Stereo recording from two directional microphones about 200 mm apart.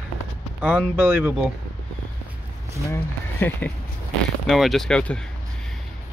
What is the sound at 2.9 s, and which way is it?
Speech, 10° left (ahead or behind).